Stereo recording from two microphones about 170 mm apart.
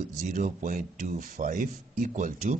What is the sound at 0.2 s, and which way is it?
A man's voice, 50° right (ahead or behind).